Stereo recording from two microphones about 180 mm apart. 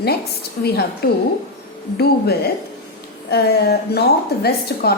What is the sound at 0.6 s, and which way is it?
Speech, 60° left (ahead or behind).